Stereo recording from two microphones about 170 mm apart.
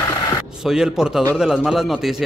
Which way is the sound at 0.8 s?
5° right (ahead or behind).